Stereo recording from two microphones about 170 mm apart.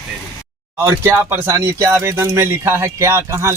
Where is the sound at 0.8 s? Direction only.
15° right (ahead or behind).